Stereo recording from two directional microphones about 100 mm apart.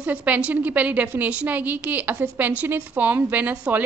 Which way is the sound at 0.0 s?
15° right (ahead or behind).